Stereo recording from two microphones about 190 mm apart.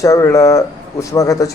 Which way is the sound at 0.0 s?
15° left (ahead or behind).